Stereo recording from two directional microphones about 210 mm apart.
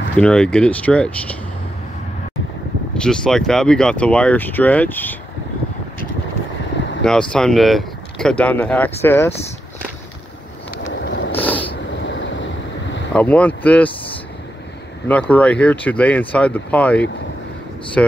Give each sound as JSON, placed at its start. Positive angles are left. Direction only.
{"t": 0.2, "sound": "speech", "side_deg": 5}
{"t": 3.0, "sound": "speech", "side_deg": 5}
{"t": 7.0, "sound": "speech", "side_deg": 5}
{"t": 11.1, "sound": "a sound", "side_deg": 55}
{"t": 11.3, "sound": "a sound", "side_deg": 10}
{"t": 11.9, "sound": "vehicle", "side_deg": 60}
{"t": 13.1, "sound": "speech", "side_deg": 5}
{"t": 15.0, "sound": "speech", "side_deg": 5}